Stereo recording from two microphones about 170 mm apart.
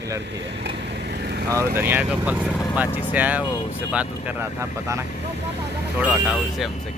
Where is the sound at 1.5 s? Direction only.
15° right (ahead or behind).